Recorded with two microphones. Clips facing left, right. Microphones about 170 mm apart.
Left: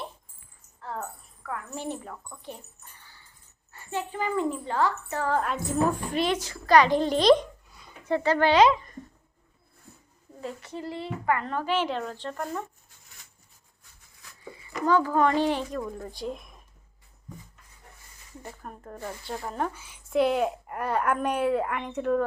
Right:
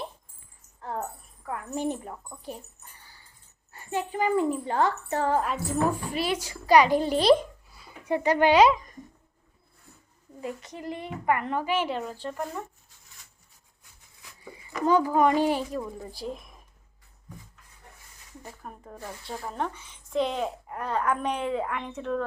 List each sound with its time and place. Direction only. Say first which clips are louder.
0.8 s keys jangling: right 2 dB; 20° right (ahead or behind)
1.5 s a woman's voice: right 4 dB; 15° right (ahead or behind)
3.8 s a woman's voice: right 3 dB; 15° right (ahead or behind)
5.4 s a child's voice: even; 5° right (ahead or behind)
8.1 s speech: right 1 dB; 15° right (ahead or behind)
10.4 s speech: even; 15° right (ahead or behind)
14.2 s a child's voice: left 1 dB; 15° right (ahead or behind)
18.4 s speech: left 2 dB; 5° right (ahead or behind)